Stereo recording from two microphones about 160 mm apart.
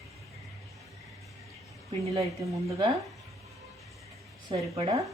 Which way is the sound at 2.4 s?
20° right (ahead or behind).